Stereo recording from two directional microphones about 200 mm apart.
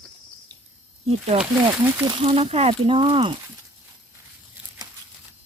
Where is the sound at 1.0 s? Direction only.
30° right (ahead or behind).